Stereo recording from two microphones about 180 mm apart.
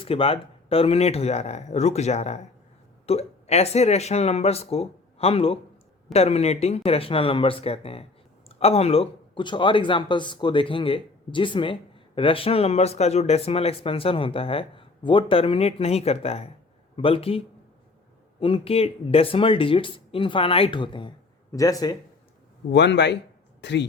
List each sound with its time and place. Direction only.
0.0 s speech: 30° left (ahead or behind)
22.7 s speech: 70° left (ahead or behind)